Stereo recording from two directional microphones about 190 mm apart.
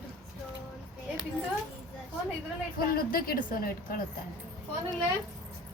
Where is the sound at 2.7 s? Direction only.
50° left (ahead or behind).